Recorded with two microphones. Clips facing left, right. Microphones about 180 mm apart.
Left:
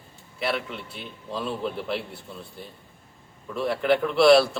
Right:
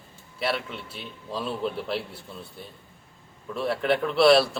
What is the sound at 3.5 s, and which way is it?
A man's voice, centre (ahead or behind).